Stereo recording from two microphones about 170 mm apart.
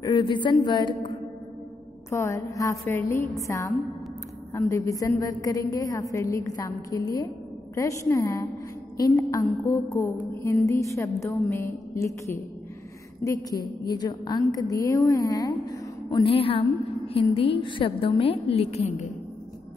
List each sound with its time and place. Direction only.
0.0 s a woman's voice: 25° left (ahead or behind)